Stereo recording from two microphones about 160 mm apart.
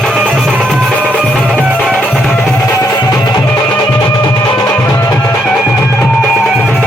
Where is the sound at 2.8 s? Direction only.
25° left (ahead or behind).